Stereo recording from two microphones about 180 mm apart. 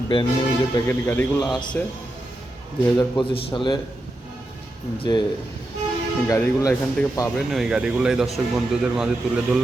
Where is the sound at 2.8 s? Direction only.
20° left (ahead or behind).